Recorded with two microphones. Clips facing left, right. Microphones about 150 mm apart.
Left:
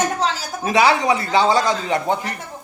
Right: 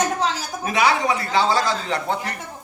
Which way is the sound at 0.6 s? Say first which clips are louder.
Left 4 dB; 30° left (ahead or behind).